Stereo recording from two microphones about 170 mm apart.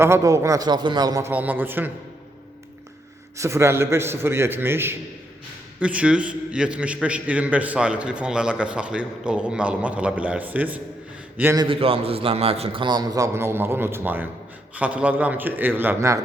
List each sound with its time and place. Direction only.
0.0 s a man's voice: 15° right (ahead or behind)
1.3 s a man's voice: 10° right (ahead or behind)
3.3 s a man's voice: 15° right (ahead or behind)
11.6 s a man's voice: 35° right (ahead or behind); by 16.2 s 15° right (ahead or behind)